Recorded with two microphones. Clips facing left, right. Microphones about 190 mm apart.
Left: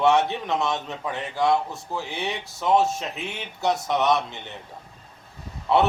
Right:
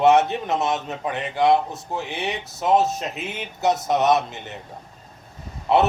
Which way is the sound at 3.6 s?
20° right (ahead or behind).